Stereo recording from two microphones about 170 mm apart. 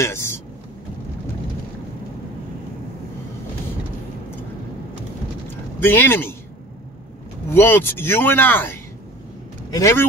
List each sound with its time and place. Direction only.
0.0 s speech: 15° left (ahead or behind)
5.5 s a sound: 10° left (ahead or behind)
7.5 s speech: 10° left (ahead or behind)